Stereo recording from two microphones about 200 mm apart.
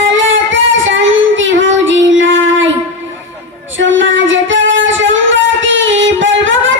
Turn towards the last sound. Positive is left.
turn(degrees=-70)  # may be behind; listen again after turning